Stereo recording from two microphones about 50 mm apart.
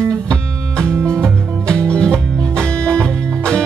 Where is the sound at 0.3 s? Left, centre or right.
Centre.